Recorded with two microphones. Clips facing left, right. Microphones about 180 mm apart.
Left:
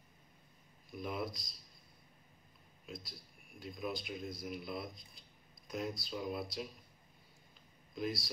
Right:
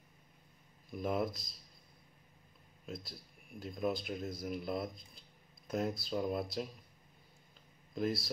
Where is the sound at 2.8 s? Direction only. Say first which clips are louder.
Right 3 dB; 50° right (ahead or behind).